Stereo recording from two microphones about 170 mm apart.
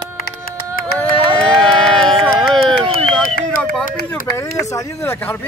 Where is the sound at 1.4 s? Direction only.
5° left (ahead or behind).